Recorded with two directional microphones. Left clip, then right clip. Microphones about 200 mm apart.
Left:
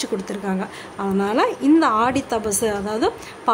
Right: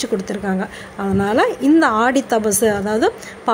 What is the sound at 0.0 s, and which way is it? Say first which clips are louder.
A woman's voice: right 4 dB; 5° right (ahead or behind).